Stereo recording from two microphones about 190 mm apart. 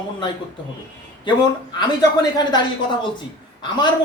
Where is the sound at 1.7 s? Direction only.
20° left (ahead or behind).